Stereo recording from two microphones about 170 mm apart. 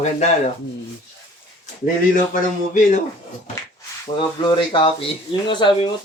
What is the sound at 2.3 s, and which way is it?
Speech, 45° left (ahead or behind).